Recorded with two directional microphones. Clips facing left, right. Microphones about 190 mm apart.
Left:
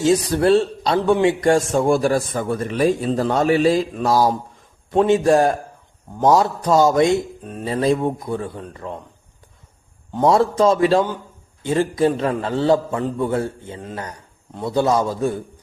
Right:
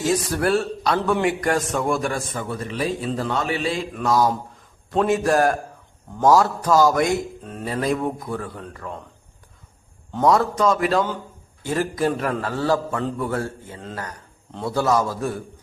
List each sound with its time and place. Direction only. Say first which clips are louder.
0.0 s a man's voice: left 5 dB; 25° left (ahead or behind)
4.9 s a man's voice: left 4 dB; 20° left (ahead or behind)
10.2 s a man's voice: left 3 dB; 30° left (ahead or behind)